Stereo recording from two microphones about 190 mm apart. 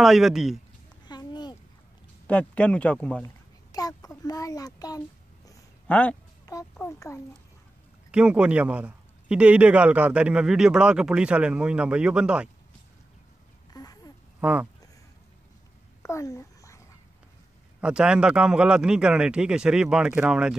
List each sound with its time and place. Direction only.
0.0 s speech: centre (ahead or behind)
1.0 s a sound: 20° left (ahead or behind)
2.2 s speech: 5° left (ahead or behind)
3.7 s a child's voice: 20° left (ahead or behind)
5.9 s speech: 5° left (ahead or behind)
8.1 s speech: 5° right (ahead or behind)
13.7 s a sound: 20° left (ahead or behind)
14.4 s speech: 5° right (ahead or behind)
16.0 s a sound: 15° left (ahead or behind)
17.7 s speech: 5° right (ahead or behind)